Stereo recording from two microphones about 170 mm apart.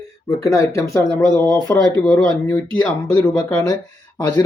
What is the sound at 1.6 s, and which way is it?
Speech, 20° left (ahead or behind).